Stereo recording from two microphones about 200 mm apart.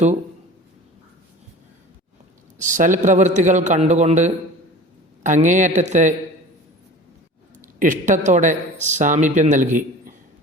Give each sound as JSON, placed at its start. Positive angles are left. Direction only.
{"t": 2.6, "sound": "speech", "side_deg": -40}
{"t": 7.6, "sound": "speech", "side_deg": -40}